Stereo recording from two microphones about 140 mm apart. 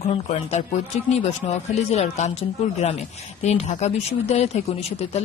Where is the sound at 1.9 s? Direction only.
55° left (ahead or behind).